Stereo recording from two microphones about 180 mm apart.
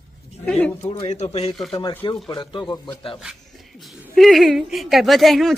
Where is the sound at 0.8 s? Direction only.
35° left (ahead or behind).